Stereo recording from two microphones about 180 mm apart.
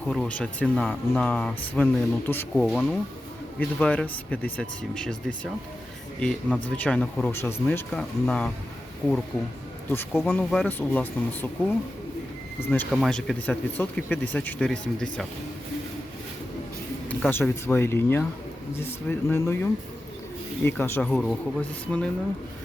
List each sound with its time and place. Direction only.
0.1 s speech: 5° left (ahead or behind)
2.6 s speech: centre (ahead or behind)
9.9 s speech: 10° left (ahead or behind)
12.9 s speech: centre (ahead or behind)
17.1 s speech: 10° left (ahead or behind)
20.7 s speech: 10° left (ahead or behind)